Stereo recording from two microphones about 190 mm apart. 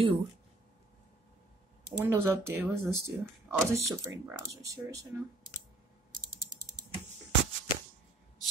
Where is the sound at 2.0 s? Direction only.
15° right (ahead or behind).